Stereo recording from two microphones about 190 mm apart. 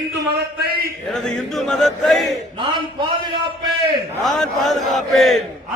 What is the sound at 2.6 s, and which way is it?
Speech, 25° right (ahead or behind).